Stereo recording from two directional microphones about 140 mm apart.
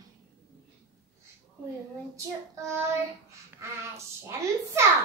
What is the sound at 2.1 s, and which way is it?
Speech, 20° right (ahead or behind).